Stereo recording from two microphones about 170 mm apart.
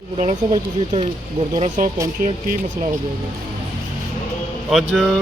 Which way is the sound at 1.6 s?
45° right (ahead or behind).